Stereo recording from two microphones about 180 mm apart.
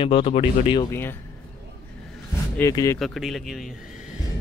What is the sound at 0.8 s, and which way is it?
Speech, 10° left (ahead or behind).